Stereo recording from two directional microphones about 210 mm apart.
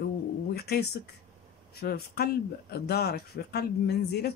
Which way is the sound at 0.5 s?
50° left (ahead or behind).